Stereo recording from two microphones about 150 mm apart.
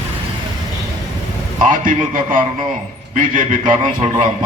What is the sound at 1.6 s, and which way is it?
A man's voice, 60° right (ahead or behind).